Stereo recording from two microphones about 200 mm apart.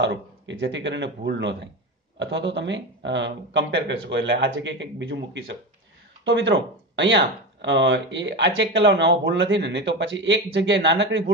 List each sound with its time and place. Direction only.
0.0 s speech: 60° right (ahead or behind)